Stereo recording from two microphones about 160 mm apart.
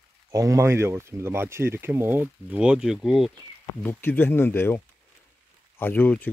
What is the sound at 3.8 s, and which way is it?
Speech, 15° left (ahead or behind).